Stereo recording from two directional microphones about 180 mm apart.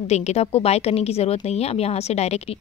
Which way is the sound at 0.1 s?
35° left (ahead or behind).